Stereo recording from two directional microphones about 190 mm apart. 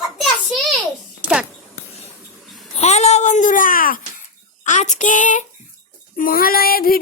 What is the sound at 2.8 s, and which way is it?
Babbling, 35° left (ahead or behind).